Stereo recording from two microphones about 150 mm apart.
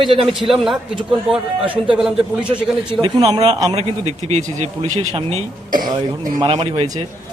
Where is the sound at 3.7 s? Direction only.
45° right (ahead or behind).